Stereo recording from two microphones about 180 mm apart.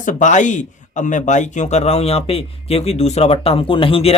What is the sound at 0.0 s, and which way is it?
Speech, 45° left (ahead or behind).